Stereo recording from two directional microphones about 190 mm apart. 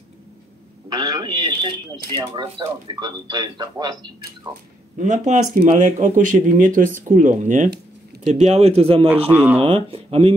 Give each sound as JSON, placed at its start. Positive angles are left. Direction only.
{"t": 0.8, "sound": "a sound", "side_deg": -20}
{"t": 2.0, "sound": "speech", "side_deg": -20}
{"t": 4.9, "sound": "speech", "side_deg": -40}
{"t": 9.3, "sound": "speech", "side_deg": -10}
{"t": 9.6, "sound": "speech", "side_deg": -30}